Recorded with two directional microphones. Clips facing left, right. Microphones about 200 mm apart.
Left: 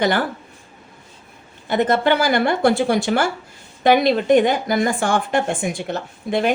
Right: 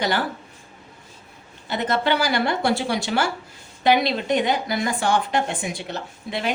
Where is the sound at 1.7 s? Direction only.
50° left (ahead or behind).